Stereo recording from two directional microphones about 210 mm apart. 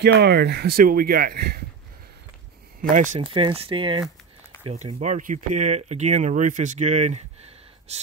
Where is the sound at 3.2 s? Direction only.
25° right (ahead or behind).